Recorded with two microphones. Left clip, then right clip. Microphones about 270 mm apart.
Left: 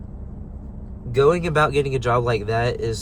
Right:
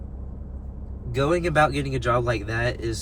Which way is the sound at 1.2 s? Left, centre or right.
Centre.